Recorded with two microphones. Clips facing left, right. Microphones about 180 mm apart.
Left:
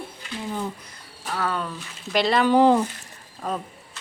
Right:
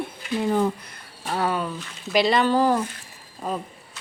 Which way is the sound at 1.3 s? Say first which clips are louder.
Right 3 dB; 20° right (ahead or behind).